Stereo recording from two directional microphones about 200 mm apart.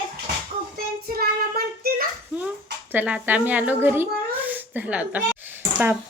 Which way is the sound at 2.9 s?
5° right (ahead or behind).